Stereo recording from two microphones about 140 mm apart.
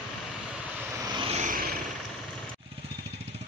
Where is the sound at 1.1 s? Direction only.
45° right (ahead or behind).